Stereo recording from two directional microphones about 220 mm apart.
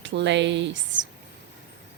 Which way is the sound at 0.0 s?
55° right (ahead or behind).